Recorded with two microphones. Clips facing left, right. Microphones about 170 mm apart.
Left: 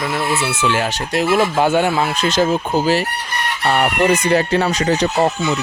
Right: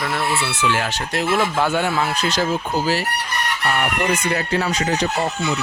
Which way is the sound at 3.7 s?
35° left (ahead or behind).